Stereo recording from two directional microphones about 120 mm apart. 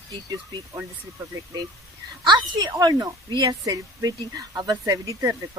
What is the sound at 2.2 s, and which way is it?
A woman's voice, 35° right (ahead or behind).